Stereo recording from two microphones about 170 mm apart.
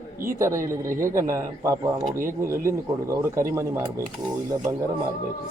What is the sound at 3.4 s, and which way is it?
Speech, 15° right (ahead or behind).